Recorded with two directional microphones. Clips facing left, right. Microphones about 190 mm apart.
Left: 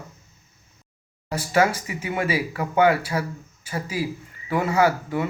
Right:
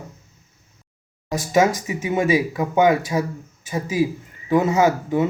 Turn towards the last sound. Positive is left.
turn(degrees=-20)  # may be behind; listen again after turning